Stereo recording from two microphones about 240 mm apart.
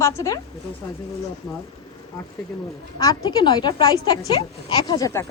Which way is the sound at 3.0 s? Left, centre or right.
Centre.